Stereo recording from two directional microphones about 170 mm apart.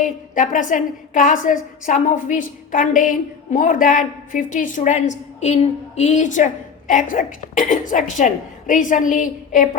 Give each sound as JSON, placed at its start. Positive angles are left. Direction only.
{"t": 0.0, "sound": "a woman's voice", "side_deg": 50}